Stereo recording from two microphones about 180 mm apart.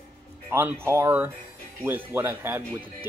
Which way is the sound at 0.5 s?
15° right (ahead or behind).